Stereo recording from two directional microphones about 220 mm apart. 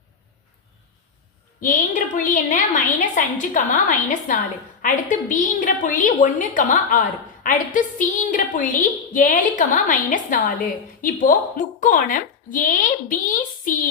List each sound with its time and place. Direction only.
1.6 s a woman's voice: 35° left (ahead or behind)